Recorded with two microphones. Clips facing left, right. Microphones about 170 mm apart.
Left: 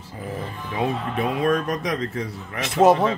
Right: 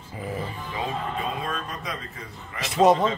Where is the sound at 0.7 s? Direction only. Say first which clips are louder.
Left 6 dB; 70° left (ahead or behind).